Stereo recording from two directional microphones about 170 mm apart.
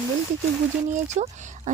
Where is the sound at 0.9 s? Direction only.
45° right (ahead or behind).